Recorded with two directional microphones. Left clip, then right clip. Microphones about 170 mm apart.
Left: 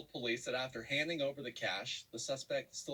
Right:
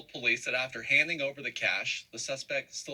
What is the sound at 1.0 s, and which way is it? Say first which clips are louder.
Speech: right 5 dB; 20° right (ahead or behind).